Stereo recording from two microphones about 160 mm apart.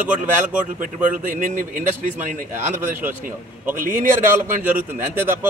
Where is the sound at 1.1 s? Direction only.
55° right (ahead or behind).